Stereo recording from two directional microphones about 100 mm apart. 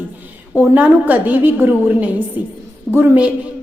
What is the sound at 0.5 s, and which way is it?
A woman's voice, 15° right (ahead or behind).